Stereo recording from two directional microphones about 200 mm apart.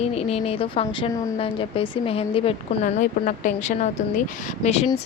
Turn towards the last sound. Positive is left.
turn(degrees=30)  # may be behind; listen again after turning